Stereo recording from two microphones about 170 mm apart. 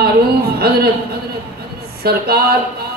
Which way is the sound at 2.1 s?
70° right (ahead or behind).